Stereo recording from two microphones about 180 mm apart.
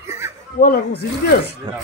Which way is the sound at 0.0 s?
15° right (ahead or behind).